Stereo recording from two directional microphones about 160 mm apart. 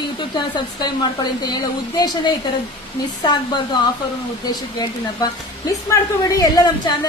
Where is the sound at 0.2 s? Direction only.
30° left (ahead or behind).